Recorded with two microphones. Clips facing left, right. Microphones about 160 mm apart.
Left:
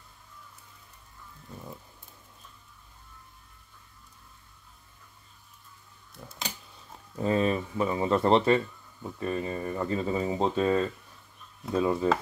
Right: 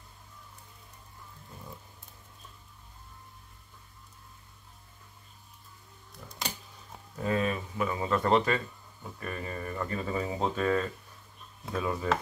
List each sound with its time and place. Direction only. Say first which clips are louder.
7.2 s speech: left 4 dB; 30° left (ahead or behind)